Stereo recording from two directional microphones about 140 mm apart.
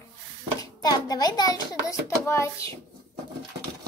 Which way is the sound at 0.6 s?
25° left (ahead or behind).